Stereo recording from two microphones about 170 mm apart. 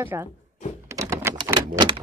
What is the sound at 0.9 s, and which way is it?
Typewriter, 15° right (ahead or behind).